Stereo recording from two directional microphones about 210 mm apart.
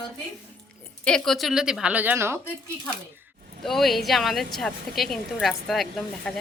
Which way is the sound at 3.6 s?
Centre (ahead or behind).